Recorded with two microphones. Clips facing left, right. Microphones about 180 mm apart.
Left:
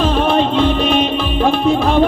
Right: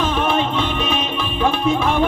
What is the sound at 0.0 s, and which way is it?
Music, 35° left (ahead or behind).